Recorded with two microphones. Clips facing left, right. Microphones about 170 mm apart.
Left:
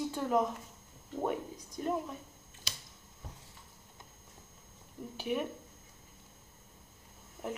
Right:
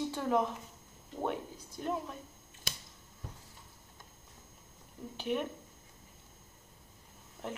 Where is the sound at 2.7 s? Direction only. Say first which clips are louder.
Right 3 dB; 50° right (ahead or behind).